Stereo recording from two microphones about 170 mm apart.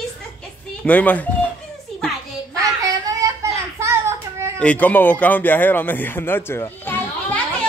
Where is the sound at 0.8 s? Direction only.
10° left (ahead or behind).